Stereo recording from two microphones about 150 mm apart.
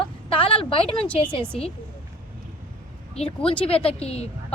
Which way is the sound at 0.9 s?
10° left (ahead or behind).